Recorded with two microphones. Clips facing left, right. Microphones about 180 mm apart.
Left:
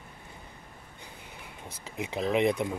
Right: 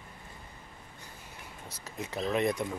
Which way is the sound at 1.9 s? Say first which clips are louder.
Left 3 dB; 15° left (ahead or behind).